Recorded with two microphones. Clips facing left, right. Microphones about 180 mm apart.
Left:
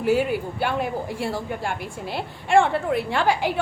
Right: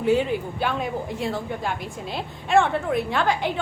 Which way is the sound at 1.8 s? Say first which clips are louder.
Left 1 dB; 65° left (ahead or behind).